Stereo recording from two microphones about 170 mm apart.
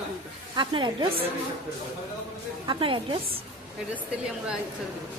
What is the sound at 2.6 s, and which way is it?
Speech, 30° right (ahead or behind).